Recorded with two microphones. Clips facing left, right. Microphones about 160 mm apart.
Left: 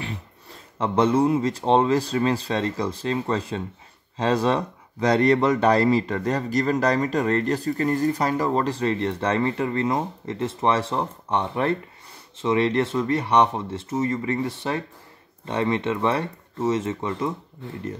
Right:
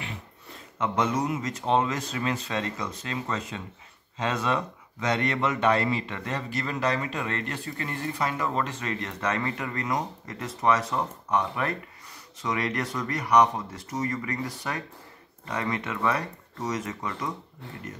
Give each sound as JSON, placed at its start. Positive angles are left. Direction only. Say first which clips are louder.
{"t": 0.7, "sound": "speech", "louder": "left 7 dB", "side_deg": 30}